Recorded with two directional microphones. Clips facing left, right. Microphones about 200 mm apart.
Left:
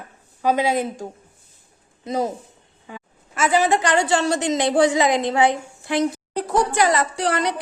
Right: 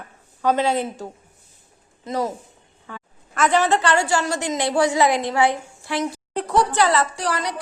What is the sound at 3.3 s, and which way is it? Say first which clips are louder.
A woman's voice: even; 5° left (ahead or behind).